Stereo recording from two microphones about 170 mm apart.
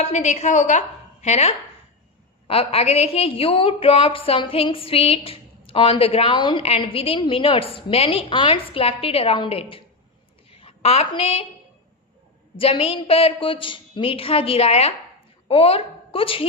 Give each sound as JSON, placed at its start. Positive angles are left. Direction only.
{"t": 0.0, "sound": "a woman's voice", "side_deg": 40}
{"t": 12.5, "sound": "a woman's voice", "side_deg": 35}